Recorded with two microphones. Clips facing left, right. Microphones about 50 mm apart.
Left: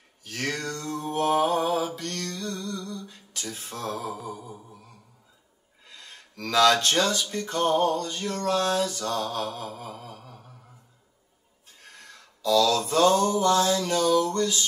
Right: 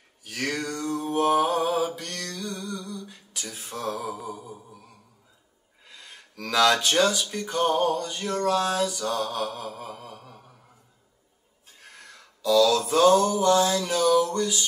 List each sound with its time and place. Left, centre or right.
0.2 s a sound: centre
0.8 s mantra: centre
2.2 s a sound: centre
3.5 s mantra: centre
4.1 s mantra: centre
5.9 s speech: centre
9.2 s mantra: right
9.6 s speech: centre
10.1 s mantra: centre
12.4 s mantra: centre